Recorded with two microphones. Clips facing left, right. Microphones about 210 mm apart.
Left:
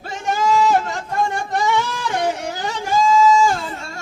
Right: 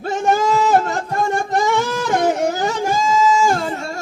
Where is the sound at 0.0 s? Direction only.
45° right (ahead or behind).